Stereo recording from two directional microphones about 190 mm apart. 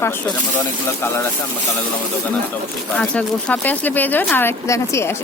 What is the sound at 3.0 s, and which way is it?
Speech, 5° left (ahead or behind).